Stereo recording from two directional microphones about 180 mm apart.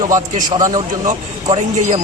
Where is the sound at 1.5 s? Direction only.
45° right (ahead or behind).